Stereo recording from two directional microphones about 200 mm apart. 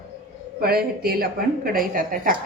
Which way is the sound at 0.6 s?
50° right (ahead or behind).